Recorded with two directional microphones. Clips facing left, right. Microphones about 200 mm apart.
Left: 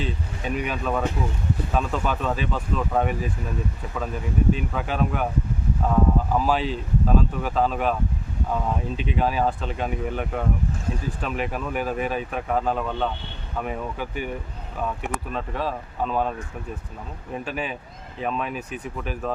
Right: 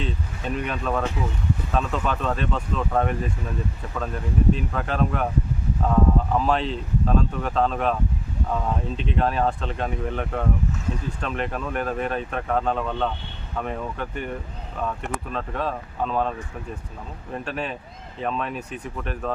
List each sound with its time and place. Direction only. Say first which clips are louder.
0.0 s speech: even; 5° left (ahead or behind)
17.3 s speech: even; 5° left (ahead or behind)